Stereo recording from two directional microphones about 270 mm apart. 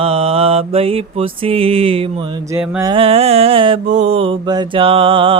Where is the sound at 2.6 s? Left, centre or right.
Centre.